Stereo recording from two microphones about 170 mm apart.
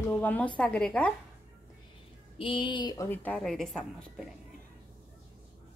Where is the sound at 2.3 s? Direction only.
30° left (ahead or behind); by 4.3 s centre (ahead or behind).